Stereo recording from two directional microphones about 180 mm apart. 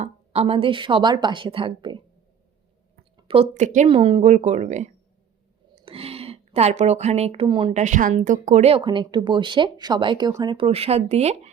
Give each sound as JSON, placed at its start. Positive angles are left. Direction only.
{"t": 0.0, "sound": "speech", "side_deg": -35}
{"t": 3.2, "sound": "a woman's voice", "side_deg": -30}
{"t": 3.8, "sound": "speech", "side_deg": -30}
{"t": 7.7, "sound": "speech", "side_deg": -40}